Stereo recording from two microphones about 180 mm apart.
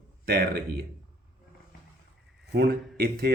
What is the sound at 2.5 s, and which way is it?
Speech, 60° right (ahead or behind).